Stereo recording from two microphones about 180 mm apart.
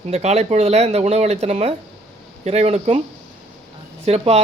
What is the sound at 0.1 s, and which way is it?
Speech, 40° right (ahead or behind).